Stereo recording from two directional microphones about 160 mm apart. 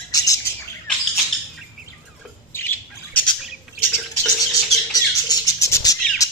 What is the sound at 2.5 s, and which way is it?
Bird, 10° left (ahead or behind).